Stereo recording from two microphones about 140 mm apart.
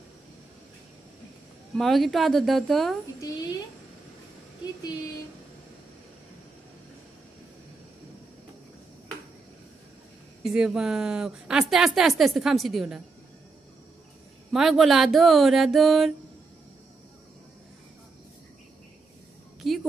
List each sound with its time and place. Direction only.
1.8 s a woman's voice: centre (ahead or behind)
3.2 s a woman's voice: 30° left (ahead or behind)
10.4 s a woman's voice: 5° right (ahead or behind)
14.5 s a woman's voice: centre (ahead or behind)
19.6 s a woman's voice: centre (ahead or behind)